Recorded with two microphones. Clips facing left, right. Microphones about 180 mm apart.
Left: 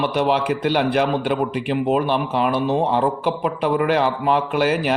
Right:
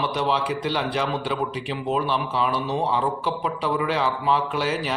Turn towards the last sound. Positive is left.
turn(degrees=60)  # may be behind; listen again after turning